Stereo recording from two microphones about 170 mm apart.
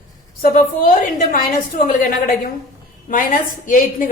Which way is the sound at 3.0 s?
55° left (ahead or behind).